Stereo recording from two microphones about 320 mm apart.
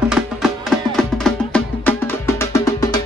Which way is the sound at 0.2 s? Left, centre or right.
Centre.